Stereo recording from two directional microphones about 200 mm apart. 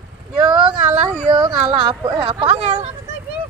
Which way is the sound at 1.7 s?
20° right (ahead or behind).